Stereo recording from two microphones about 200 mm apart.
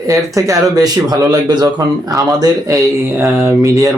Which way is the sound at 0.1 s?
15° right (ahead or behind).